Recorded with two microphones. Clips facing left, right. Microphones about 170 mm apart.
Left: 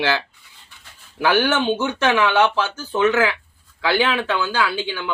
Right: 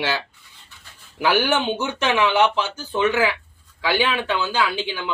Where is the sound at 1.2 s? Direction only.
15° right (ahead or behind).